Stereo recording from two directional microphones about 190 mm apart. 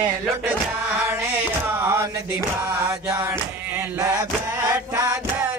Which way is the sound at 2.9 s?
15° right (ahead or behind).